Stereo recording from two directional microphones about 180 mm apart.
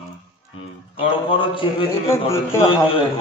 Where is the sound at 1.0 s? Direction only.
30° left (ahead or behind).